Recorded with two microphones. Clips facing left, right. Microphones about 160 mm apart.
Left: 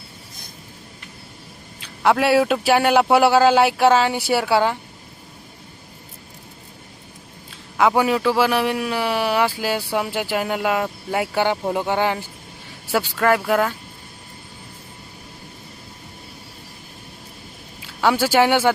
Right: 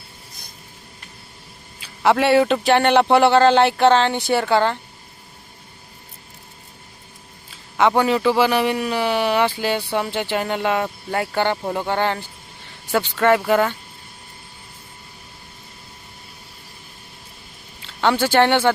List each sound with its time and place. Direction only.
1.8 s a man's voice: centre (ahead or behind)
7.5 s a man's voice: centre (ahead or behind)
17.8 s speech: 10° left (ahead or behind)